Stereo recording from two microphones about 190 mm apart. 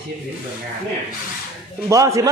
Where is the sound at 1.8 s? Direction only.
15° right (ahead or behind).